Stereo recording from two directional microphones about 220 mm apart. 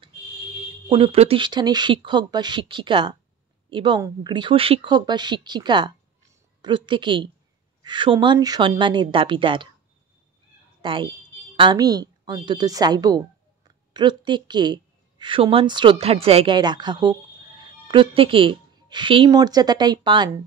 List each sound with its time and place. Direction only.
0.8 s a woman's voice: 25° right (ahead or behind)
10.8 s a woman's voice: 20° right (ahead or behind)